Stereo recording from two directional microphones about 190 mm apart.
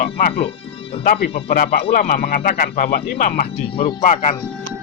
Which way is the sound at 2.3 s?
50° left (ahead or behind).